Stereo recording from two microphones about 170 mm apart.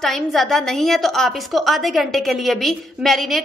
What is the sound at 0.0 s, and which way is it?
A woman's voice, centre (ahead or behind).